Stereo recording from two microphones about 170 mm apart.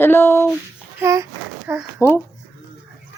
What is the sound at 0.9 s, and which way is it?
Speech, 15° right (ahead or behind).